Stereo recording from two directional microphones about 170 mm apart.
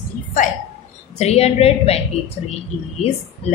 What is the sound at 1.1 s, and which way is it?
Speech, 40° left (ahead or behind).